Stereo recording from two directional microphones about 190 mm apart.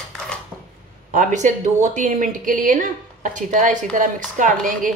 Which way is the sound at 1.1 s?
40° right (ahead or behind).